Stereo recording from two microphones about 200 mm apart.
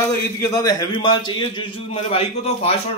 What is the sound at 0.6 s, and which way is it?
A man's voice, 20° left (ahead or behind).